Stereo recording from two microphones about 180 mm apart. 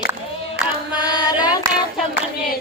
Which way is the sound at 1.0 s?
20° left (ahead or behind).